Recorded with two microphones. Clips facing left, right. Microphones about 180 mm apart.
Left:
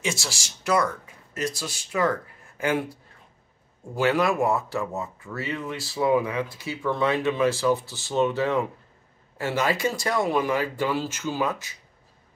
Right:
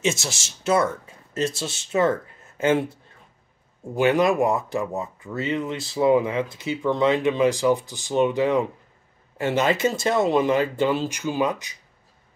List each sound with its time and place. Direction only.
0.0 s speech: 20° right (ahead or behind)